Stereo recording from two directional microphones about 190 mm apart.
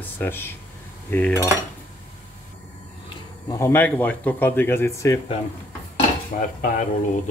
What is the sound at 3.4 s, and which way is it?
Speech, 15° left (ahead or behind).